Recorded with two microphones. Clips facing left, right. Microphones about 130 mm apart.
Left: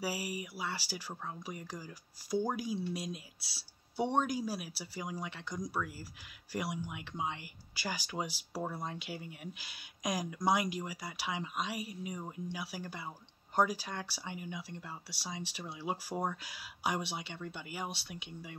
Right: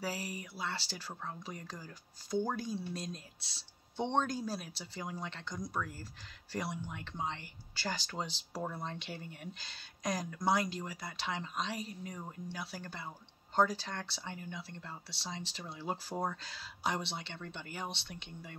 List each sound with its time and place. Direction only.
0.0 s speech: 10° left (ahead or behind)